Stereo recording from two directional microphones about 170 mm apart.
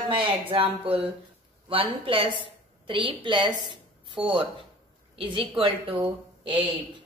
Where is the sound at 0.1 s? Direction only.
30° right (ahead or behind).